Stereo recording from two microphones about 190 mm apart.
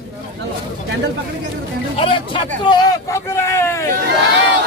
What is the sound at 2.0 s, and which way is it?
Speech, 30° left (ahead or behind).